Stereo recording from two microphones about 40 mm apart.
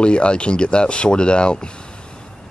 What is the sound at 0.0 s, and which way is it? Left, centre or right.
Speech, left.